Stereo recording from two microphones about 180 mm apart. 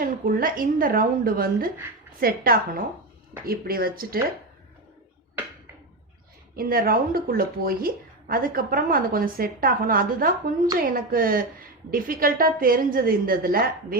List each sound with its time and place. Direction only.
0.0 s speech: 50° right (ahead or behind)
6.6 s speech: 55° right (ahead or behind)